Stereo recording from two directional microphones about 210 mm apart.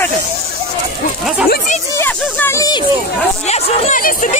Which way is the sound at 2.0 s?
10° left (ahead or behind).